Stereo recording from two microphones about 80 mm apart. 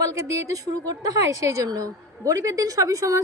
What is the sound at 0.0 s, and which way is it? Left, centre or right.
A woman's voice, right.